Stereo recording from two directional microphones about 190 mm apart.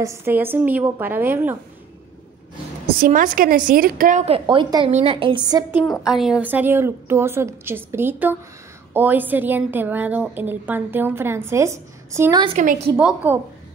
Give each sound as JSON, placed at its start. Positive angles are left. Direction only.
{"t": 0.0, "sound": "a woman's voice", "side_deg": -15}
{"t": 3.0, "sound": "a woman's voice", "side_deg": -45}
{"t": 5.8, "sound": "a woman's voice", "side_deg": 0}
{"t": 12.5, "sound": "a woman's voice", "side_deg": -40}
{"t": 12.9, "sound": "a woman's voice", "side_deg": -10}